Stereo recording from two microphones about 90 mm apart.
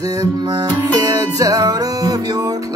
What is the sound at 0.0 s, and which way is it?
Music, 40° right (ahead or behind).